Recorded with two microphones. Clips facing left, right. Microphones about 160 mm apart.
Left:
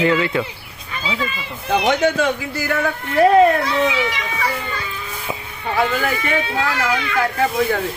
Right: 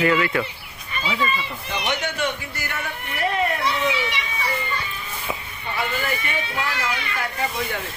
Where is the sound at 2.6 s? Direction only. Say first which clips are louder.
Left 11 dB; 90° left.